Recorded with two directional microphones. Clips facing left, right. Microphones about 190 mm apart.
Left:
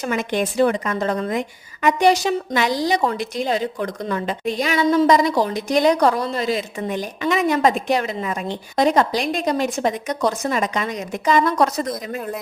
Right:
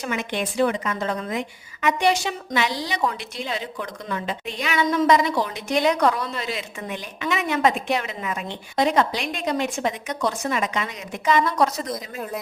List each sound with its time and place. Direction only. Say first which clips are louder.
0.0 s a woman's voice: left 5 dB; 40° left (ahead or behind)